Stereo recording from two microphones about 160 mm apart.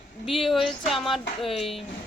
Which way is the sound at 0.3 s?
Centre (ahead or behind).